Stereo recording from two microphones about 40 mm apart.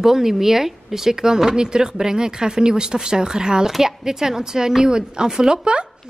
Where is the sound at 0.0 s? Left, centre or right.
Centre.